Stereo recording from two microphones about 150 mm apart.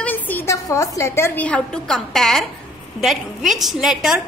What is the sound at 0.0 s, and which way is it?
A woman's voice, 10° left (ahead or behind).